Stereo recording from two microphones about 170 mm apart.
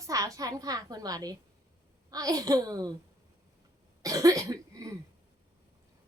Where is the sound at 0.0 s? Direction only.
20° right (ahead or behind).